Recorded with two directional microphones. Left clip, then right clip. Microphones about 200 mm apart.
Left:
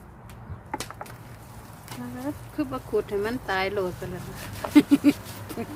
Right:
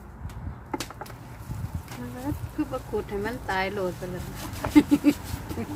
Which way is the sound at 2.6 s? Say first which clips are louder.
Left 3 dB; 45° left (ahead or behind).